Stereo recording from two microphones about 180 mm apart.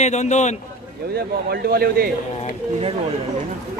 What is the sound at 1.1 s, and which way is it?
Speech, 60° right (ahead or behind).